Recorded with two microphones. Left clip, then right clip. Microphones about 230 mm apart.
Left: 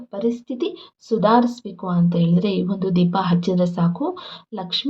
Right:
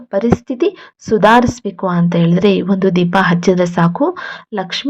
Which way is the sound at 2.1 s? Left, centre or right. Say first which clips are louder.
Right 10 dB; right.